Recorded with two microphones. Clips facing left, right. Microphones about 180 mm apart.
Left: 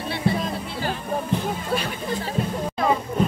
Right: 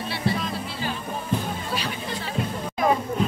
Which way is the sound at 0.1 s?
45° left (ahead or behind).